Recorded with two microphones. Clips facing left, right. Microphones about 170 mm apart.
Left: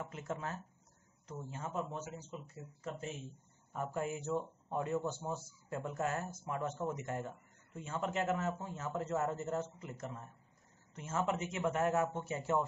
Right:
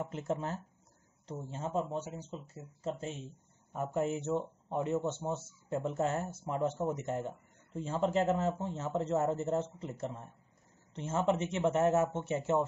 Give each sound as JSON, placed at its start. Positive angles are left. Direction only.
{"t": 0.0, "sound": "speech", "side_deg": -30}